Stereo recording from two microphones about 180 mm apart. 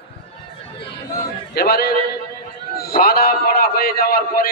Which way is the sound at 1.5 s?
60° left (ahead or behind).